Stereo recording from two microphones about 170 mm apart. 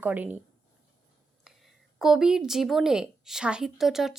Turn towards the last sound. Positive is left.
turn(degrees=0)  # may be behind; listen again after turning